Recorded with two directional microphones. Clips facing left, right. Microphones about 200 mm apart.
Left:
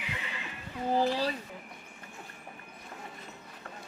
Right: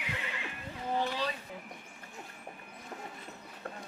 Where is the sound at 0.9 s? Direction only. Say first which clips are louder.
Left 5 dB; 35° left (ahead or behind).